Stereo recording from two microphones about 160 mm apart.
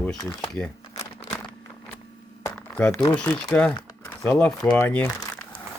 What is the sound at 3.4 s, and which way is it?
Speech, 10° left (ahead or behind).